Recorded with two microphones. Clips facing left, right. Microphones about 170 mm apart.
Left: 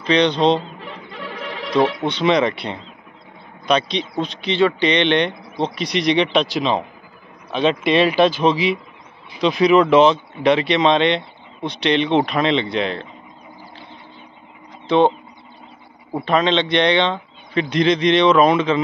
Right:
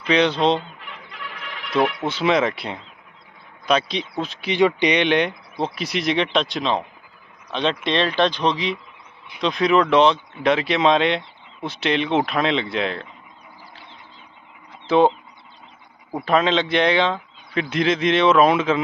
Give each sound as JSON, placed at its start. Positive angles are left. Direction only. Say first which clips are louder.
{"t": 0.1, "sound": "speech", "louder": "left 2 dB", "side_deg": -5}
{"t": 0.6, "sound": "a sound", "louder": "left 4 dB", "side_deg": 35}
{"t": 2.0, "sound": "speech", "louder": "left 2 dB", "side_deg": -5}
{"t": 7.8, "sound": "speech", "louder": "left 5 dB", "side_deg": 10}
{"t": 14.9, "sound": "speech", "louder": "left 1 dB", "side_deg": -5}